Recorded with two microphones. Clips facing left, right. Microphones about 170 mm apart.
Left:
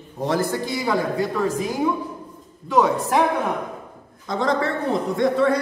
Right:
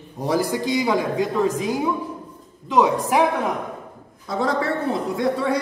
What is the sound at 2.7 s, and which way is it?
Speech, 15° right (ahead or behind).